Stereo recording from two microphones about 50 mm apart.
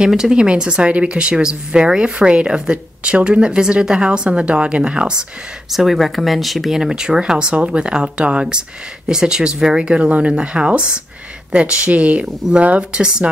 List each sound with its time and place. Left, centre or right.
0.1 s speech: centre
5.7 s speech: centre
6.8 s speech: centre